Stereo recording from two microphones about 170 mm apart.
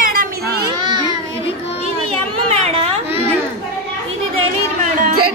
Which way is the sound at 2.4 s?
35° right (ahead or behind).